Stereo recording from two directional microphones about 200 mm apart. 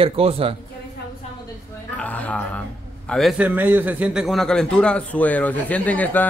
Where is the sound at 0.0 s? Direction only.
30° right (ahead or behind).